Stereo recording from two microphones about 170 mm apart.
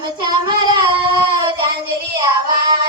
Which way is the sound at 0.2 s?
25° right (ahead or behind).